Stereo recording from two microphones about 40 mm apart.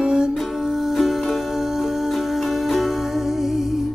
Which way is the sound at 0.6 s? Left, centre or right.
Centre.